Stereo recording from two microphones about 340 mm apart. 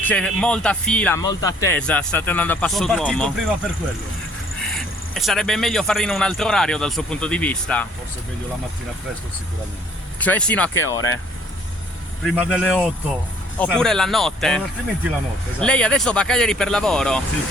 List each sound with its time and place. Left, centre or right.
0.0 s speech: centre
4.6 s speech: centre
10.2 s speech: centre
10.8 s speech: left
12.2 s speech: centre
15.6 s speech: centre